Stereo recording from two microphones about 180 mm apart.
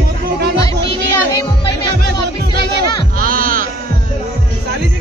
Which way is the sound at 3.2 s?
50° right (ahead or behind).